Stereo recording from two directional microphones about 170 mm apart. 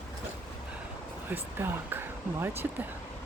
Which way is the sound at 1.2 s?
10° right (ahead or behind).